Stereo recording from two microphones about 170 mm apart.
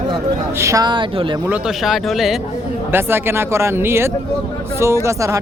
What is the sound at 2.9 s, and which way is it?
Speech, 15° right (ahead or behind).